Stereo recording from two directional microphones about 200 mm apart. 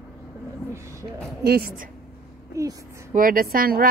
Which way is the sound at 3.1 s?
45° right (ahead or behind).